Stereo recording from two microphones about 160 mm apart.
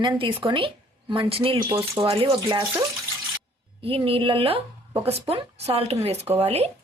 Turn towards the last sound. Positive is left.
turn(degrees=-40)  # may be behind; listen again after turning